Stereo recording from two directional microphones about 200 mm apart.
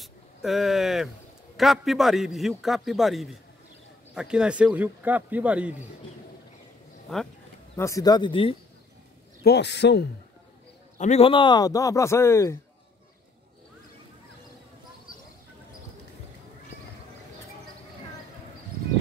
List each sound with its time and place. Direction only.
0.0 s a sound: centre (ahead or behind)
1.6 s a man's voice: centre (ahead or behind)
7.1 s a man's voice: centre (ahead or behind)
7.7 s speech: 15° left (ahead or behind)
9.4 s a man's voice: 55° left (ahead or behind)
11.0 s speech: 30° left (ahead or behind); by 12.5 s 15° left (ahead or behind)